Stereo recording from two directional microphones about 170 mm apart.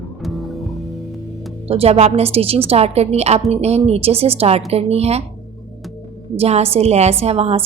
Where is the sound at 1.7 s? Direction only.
35° right (ahead or behind).